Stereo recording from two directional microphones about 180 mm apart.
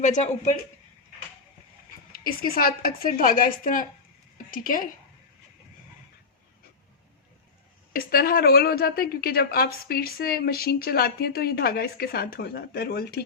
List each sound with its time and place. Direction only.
0.0 s a woman's voice: 45° left (ahead or behind)
2.1 s a woman's voice: 55° left (ahead or behind)
7.9 s a woman's voice: 55° left (ahead or behind)